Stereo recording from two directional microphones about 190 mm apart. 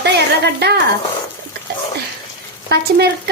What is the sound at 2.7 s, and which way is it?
Speech, 60° right (ahead or behind).